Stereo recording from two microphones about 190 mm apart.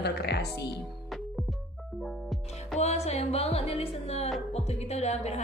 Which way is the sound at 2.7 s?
35° left (ahead or behind).